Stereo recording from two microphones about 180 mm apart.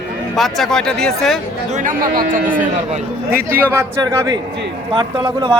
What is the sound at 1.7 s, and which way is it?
A man's voice, 50° right (ahead or behind).